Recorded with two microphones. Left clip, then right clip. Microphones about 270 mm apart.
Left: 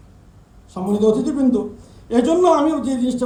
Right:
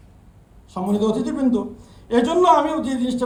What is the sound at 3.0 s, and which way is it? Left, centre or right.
Speech, centre.